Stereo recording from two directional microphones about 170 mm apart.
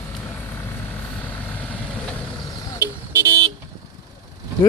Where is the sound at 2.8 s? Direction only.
20° right (ahead or behind).